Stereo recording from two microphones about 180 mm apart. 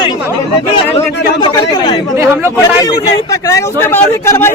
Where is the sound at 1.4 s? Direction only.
25° left (ahead or behind).